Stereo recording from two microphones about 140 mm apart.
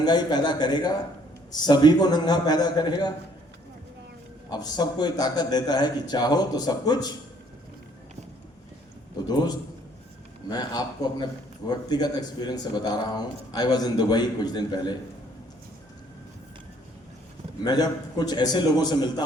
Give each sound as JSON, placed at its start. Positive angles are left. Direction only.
{"t": 0.0, "sound": "a man's voice", "side_deg": 30}
{"t": 4.5, "sound": "a man's voice", "side_deg": 30}
{"t": 10.5, "sound": "a man's voice", "side_deg": 30}
{"t": 17.6, "sound": "a man's voice", "side_deg": 30}